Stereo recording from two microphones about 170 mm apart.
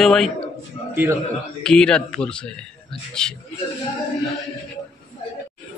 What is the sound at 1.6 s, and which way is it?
A man's voice, 5° left (ahead or behind).